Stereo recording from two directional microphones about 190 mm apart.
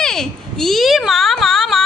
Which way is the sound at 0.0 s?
Centre (ahead or behind).